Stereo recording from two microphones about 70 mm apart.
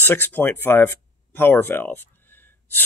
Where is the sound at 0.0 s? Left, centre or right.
Left.